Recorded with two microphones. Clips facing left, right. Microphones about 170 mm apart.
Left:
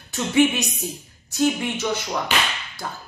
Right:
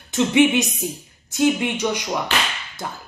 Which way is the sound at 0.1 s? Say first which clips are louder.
Right 3 dB; 20° right (ahead or behind).